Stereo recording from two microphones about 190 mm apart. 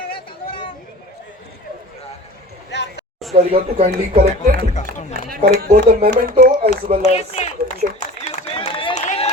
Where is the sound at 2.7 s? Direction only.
65° left (ahead or behind).